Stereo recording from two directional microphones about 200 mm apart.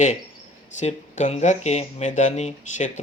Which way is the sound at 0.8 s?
35° left (ahead or behind).